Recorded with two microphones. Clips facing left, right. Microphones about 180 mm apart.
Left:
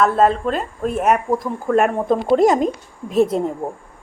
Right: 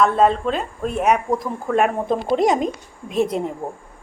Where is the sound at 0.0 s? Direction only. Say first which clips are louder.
Left 1 dB; 5° left (ahead or behind).